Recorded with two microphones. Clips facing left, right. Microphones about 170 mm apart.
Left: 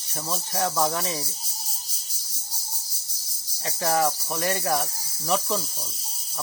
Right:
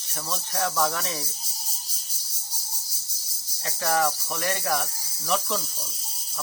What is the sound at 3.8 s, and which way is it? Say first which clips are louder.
Speech: left 1 dB; 25° left (ahead or behind).